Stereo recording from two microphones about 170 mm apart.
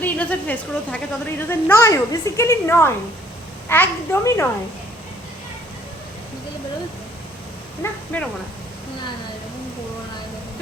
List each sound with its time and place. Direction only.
0.0 s a woman's voice: 10° left (ahead or behind)
7.8 s a woman's voice: 10° left (ahead or behind)